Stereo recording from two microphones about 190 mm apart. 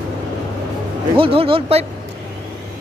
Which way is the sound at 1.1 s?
30° right (ahead or behind).